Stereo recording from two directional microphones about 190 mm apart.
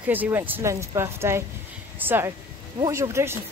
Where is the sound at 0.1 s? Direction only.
10° right (ahead or behind).